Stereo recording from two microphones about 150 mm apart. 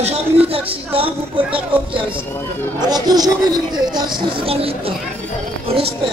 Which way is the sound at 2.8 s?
25° right (ahead or behind).